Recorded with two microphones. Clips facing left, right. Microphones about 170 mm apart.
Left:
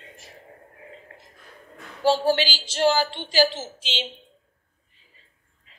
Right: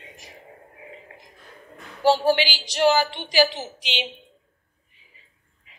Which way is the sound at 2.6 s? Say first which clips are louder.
Right 2 dB; 15° right (ahead or behind).